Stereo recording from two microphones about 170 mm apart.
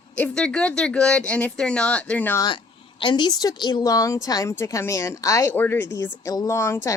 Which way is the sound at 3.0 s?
25° left (ahead or behind).